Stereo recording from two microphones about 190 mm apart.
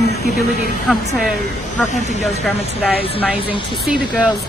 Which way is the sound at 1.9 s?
40° left (ahead or behind).